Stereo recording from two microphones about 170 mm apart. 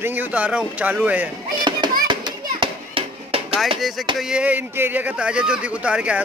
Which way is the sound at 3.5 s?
Centre (ahead or behind).